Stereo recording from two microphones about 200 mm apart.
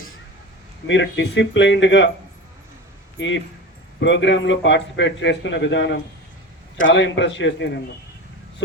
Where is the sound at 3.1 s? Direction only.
70° left (ahead or behind).